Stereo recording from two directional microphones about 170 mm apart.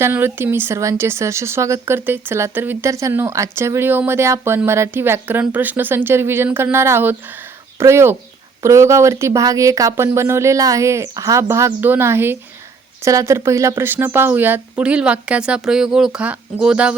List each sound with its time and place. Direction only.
0.0 s speech: 15° right (ahead or behind)